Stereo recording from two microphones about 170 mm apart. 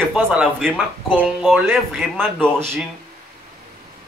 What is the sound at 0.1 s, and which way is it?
Speech, 5° right (ahead or behind).